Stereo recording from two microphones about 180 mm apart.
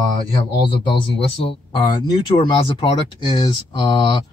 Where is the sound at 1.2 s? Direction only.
30° left (ahead or behind).